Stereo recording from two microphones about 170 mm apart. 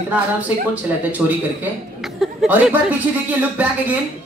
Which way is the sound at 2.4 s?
10° right (ahead or behind).